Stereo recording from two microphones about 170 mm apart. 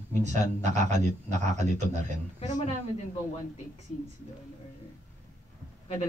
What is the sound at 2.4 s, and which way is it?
Speech, 40° left (ahead or behind).